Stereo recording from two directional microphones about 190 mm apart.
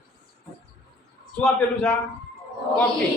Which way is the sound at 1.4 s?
5° left (ahead or behind).